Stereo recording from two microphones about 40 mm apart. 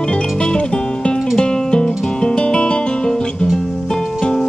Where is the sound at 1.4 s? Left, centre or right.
Left.